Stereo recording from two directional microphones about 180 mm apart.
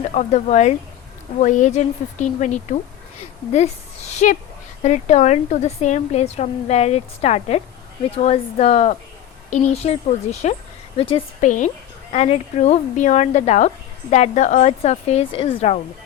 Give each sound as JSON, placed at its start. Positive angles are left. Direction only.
{"t": 0.1, "sound": "a woman's voice", "side_deg": 40}
{"t": 4.2, "sound": "a woman's voice", "side_deg": 45}